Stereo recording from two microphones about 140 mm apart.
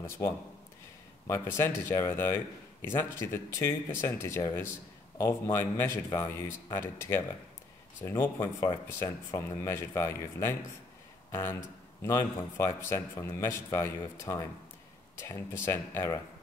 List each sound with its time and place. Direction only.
1.2 s speech: 20° left (ahead or behind)